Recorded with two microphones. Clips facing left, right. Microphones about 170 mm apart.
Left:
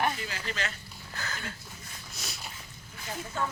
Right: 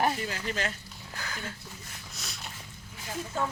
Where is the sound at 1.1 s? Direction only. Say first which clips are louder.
Even; 10° right (ahead or behind).